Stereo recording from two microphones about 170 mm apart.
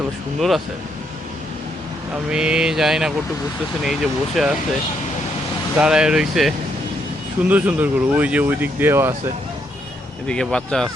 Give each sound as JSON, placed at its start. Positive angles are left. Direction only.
{"t": 0.3, "sound": "speech", "side_deg": 0}
{"t": 2.3, "sound": "speech", "side_deg": -5}
{"t": 5.7, "sound": "speech", "side_deg": -5}
{"t": 10.2, "sound": "speech", "side_deg": 5}